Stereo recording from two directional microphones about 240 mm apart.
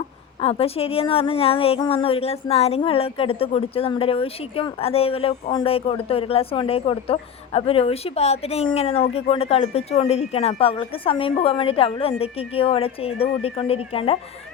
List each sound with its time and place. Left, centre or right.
0.3 s a woman's voice: left